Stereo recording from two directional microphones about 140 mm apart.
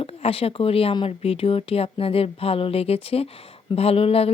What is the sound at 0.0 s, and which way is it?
Speech, 45° left (ahead or behind).